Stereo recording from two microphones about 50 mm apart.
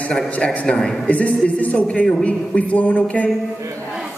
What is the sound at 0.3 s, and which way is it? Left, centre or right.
Speech, left.